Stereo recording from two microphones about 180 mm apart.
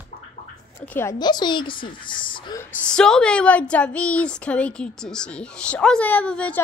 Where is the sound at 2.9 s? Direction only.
5° left (ahead or behind).